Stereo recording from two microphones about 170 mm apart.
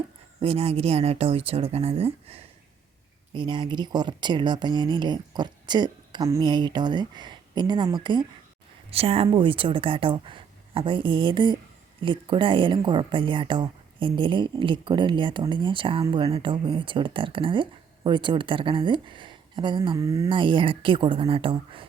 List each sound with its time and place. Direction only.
0.4 s speech: 35° right (ahead or behind)
20.0 s speech: 20° right (ahead or behind)
20.3 s speech: 30° right (ahead or behind)